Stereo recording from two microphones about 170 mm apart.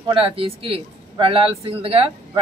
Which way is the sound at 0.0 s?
30° right (ahead or behind).